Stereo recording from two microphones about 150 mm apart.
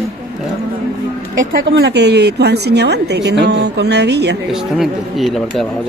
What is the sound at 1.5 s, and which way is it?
A woman's voice, 90° right.